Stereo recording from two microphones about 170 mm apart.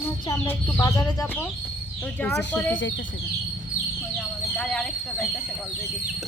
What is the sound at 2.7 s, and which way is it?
Speech, 90° left.